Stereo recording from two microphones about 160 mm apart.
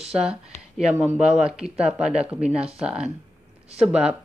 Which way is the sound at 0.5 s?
45° left (ahead or behind).